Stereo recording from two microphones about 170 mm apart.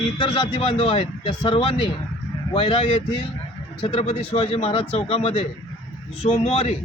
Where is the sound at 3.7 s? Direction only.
40° left (ahead or behind).